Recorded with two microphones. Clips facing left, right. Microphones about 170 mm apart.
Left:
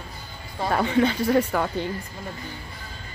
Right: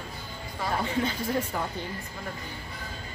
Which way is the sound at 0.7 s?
75° left (ahead or behind).